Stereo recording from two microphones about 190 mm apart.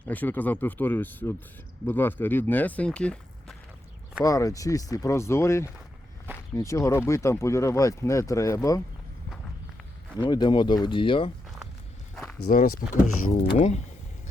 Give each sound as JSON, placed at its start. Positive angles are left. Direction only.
{"t": 0.1, "sound": "speech", "side_deg": 10}
{"t": 4.2, "sound": "speech", "side_deg": 15}
{"t": 10.2, "sound": "speech", "side_deg": 20}
{"t": 12.1, "sound": "walk", "side_deg": 0}
{"t": 12.5, "sound": "speech", "side_deg": 45}